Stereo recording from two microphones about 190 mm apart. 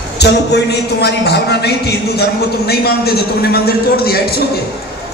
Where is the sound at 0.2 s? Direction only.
60° left (ahead or behind).